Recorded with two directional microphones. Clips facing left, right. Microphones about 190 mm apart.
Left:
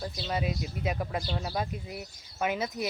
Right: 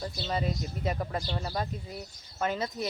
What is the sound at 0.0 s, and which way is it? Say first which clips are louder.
Speech: even; 5° left (ahead or behind).